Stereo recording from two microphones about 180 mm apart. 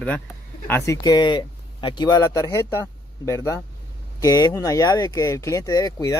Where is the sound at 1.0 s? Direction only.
25° left (ahead or behind).